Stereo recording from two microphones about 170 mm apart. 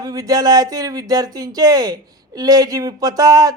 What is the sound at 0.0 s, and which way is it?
A woman's voice, 20° right (ahead or behind).